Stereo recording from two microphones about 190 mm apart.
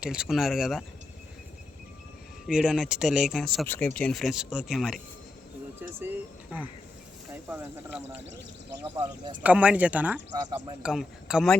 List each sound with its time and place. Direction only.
0.0 s speech: 5° right (ahead or behind)
2.5 s speech: 5° right (ahead or behind)
8.7 s speech: 25° right (ahead or behind)
9.4 s speech: 5° right (ahead or behind)